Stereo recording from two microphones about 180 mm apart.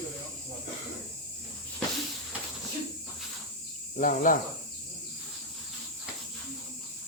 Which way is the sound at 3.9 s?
50° left (ahead or behind).